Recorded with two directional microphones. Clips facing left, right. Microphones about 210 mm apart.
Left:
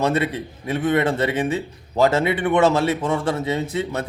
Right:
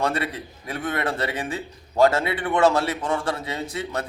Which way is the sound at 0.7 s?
20° left (ahead or behind).